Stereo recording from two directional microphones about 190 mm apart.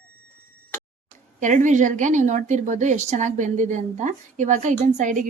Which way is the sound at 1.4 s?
40° right (ahead or behind).